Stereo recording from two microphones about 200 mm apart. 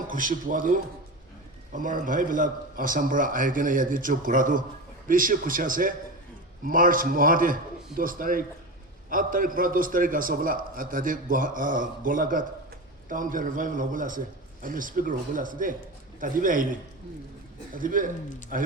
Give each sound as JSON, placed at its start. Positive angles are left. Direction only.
{"t": 0.1, "sound": "a man's voice", "side_deg": -40}
{"t": 17.7, "sound": "a man's voice", "side_deg": -45}